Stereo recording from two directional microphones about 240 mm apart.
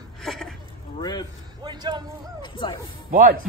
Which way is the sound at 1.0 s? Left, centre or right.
Centre.